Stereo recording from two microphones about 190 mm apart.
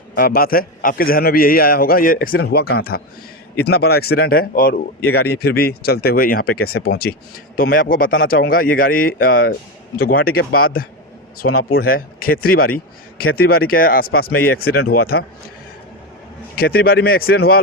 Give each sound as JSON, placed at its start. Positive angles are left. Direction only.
{"t": 0.2, "sound": "speech", "side_deg": 50}
{"t": 11.4, "sound": "a man's voice", "side_deg": 90}
{"t": 11.8, "sound": "speech", "side_deg": 50}
{"t": 16.6, "sound": "speech", "side_deg": 50}